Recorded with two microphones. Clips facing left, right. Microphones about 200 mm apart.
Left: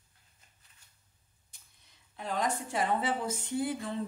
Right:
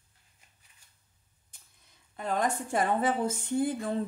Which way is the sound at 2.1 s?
50° right (ahead or behind).